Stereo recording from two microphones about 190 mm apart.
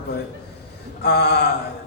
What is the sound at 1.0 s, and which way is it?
Speech, 60° left (ahead or behind).